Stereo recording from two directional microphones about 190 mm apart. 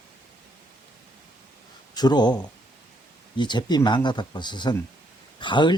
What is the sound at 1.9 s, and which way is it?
Speech, 20° left (ahead or behind).